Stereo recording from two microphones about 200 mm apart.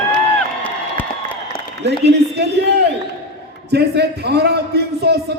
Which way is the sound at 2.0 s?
55° right (ahead or behind).